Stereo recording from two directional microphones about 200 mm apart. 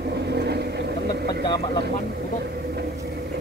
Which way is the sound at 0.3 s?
55° right (ahead or behind).